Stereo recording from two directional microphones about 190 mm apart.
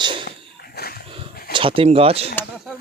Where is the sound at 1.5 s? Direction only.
30° right (ahead or behind).